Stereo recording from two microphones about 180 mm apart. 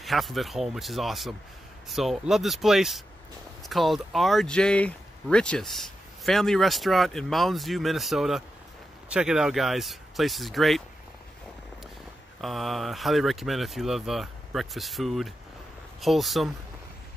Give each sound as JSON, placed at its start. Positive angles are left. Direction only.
{"t": 0.0, "sound": "speech", "side_deg": 0}
{"t": 12.4, "sound": "speech", "side_deg": 0}